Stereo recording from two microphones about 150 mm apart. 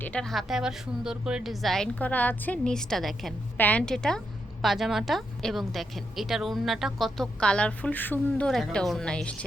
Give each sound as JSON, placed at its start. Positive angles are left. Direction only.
{"t": 0.0, "sound": "a woman's voice", "side_deg": 5}